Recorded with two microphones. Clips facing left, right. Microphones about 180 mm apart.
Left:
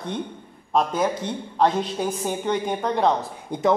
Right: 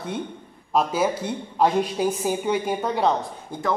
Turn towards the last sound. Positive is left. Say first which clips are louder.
# left 5 dB
turn(degrees=20)  # may be behind; listen again after turning